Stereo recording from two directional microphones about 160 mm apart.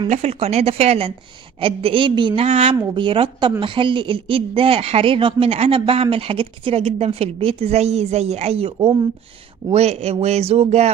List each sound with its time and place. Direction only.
0.1 s a woman's voice: 40° right (ahead or behind)